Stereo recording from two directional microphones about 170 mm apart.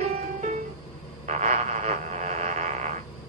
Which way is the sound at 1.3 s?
40° right (ahead or behind).